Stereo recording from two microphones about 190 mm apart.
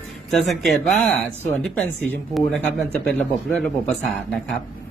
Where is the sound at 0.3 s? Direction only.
Centre (ahead or behind).